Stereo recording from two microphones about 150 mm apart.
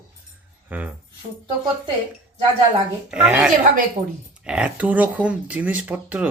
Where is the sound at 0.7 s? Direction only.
10° right (ahead or behind).